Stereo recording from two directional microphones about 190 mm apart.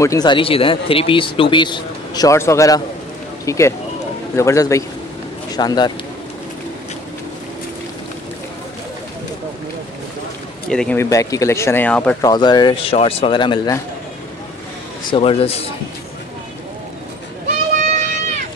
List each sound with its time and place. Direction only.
0.0 s a man's voice: 20° left (ahead or behind)
10.7 s speech: 5° left (ahead or behind)
12.2 s a man's voice: 20° left (ahead or behind)
15.0 s a man's voice: 30° left (ahead or behind)
17.7 s run: 40° right (ahead or behind)